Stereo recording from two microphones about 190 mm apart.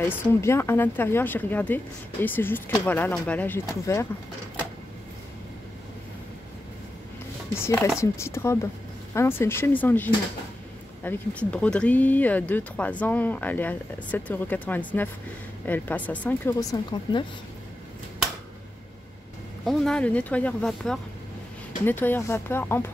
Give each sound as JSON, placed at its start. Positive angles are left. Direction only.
{"t": 0.1, "sound": "speech", "side_deg": 10}
{"t": 7.5, "sound": "speech", "side_deg": 15}
{"t": 19.6, "sound": "speech", "side_deg": 0}